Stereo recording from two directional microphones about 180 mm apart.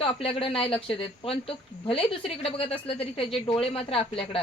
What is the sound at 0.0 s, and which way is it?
A woman's voice, 30° left (ahead or behind).